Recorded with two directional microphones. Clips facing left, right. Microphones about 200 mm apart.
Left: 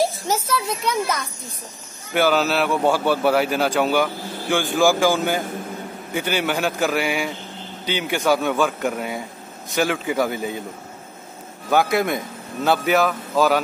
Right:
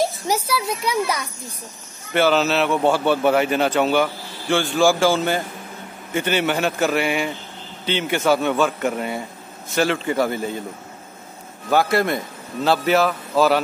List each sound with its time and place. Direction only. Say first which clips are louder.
0.3 s a sound: right 1 dB; 10° right (ahead or behind)
2.1 s a man's voice: right 1 dB; 10° left (ahead or behind)
5.0 s a man's voice: right 1 dB; 15° left (ahead or behind)
11.7 s speech: even; centre (ahead or behind)